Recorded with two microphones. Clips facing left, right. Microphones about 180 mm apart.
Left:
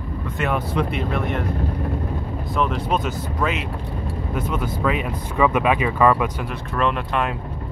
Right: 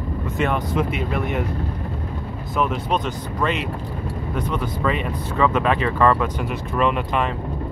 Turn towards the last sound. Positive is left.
turn(degrees=0)  # may be behind; listen again after turning